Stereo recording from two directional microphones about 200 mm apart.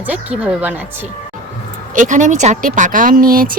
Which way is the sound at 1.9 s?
40° right (ahead or behind).